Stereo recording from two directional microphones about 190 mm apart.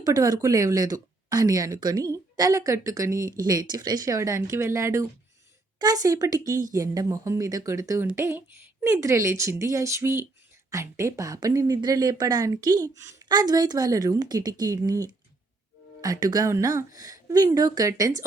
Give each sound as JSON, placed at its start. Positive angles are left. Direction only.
{"t": 0.0, "sound": "speech", "side_deg": -20}